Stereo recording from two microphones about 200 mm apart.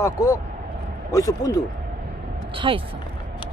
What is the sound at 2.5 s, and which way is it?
Speech, 25° right (ahead or behind).